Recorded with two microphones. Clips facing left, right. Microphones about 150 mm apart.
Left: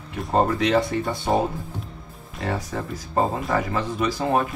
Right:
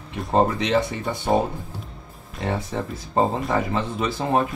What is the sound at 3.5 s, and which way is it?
Speech, 25° right (ahead or behind).